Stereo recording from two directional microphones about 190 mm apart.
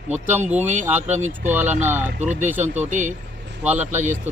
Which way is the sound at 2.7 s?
40° right (ahead or behind).